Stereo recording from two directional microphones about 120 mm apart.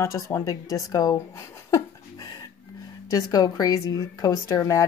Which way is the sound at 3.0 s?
30° left (ahead or behind).